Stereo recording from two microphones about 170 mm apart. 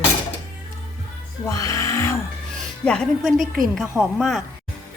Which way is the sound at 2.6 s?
5° left (ahead or behind).